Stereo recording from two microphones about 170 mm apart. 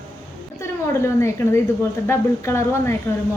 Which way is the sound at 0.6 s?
15° left (ahead or behind).